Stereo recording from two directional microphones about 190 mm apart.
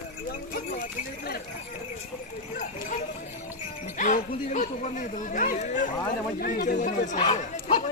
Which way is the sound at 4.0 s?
40° left (ahead or behind).